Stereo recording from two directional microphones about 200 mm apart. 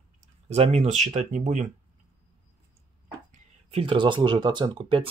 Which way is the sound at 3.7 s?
30° right (ahead or behind).